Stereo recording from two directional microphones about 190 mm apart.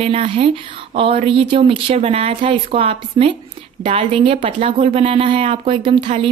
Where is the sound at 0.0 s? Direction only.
30° right (ahead or behind).